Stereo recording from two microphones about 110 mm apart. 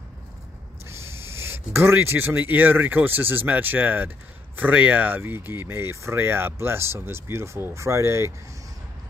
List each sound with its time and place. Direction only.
0.8 s speech: 25° right (ahead or behind)